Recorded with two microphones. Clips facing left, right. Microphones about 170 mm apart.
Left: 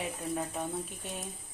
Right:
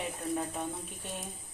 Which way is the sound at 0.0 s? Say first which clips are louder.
Right 1 dB; centre (ahead or behind).